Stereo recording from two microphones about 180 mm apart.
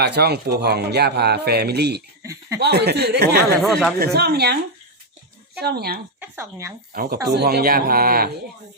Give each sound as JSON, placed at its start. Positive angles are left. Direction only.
{"t": 0.0, "sound": "speech", "side_deg": -65}
{"t": 2.2, "sound": "speech", "side_deg": -15}
{"t": 2.6, "sound": "speech", "side_deg": -65}
{"t": 3.6, "sound": "speech", "side_deg": 0}
{"t": 3.9, "sound": "speech", "side_deg": -60}
{"t": 5.5, "sound": "speech", "side_deg": -60}
{"t": 6.1, "sound": "speech", "side_deg": -15}
{"t": 6.9, "sound": "speech", "side_deg": -55}